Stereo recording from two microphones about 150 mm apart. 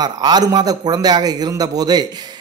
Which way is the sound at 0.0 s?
25° right (ahead or behind).